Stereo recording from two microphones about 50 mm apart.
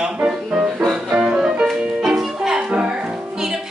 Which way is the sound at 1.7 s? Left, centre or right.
Centre.